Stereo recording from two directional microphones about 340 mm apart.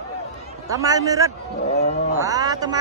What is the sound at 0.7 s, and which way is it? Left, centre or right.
Speech, centre.